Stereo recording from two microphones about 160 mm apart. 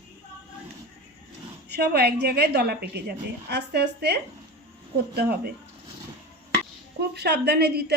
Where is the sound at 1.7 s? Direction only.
90° right.